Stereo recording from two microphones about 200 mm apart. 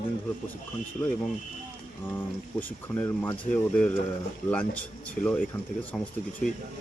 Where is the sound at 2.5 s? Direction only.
10° left (ahead or behind).